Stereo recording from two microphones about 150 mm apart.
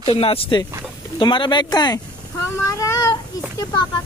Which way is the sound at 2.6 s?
20° left (ahead or behind).